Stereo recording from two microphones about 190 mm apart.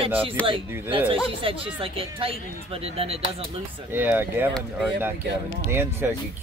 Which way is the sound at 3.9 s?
10° right (ahead or behind).